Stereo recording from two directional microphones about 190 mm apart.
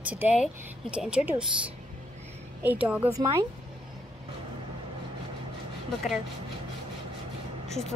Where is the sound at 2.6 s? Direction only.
10° right (ahead or behind).